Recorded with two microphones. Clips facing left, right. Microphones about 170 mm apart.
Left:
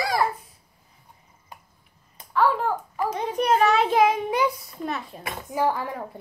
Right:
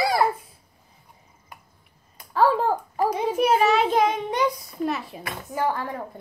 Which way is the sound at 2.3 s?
35° right (ahead or behind).